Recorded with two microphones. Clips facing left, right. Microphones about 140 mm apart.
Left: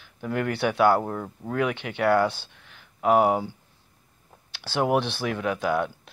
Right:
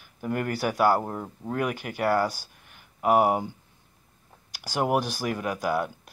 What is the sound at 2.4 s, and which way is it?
Speech, 80° left.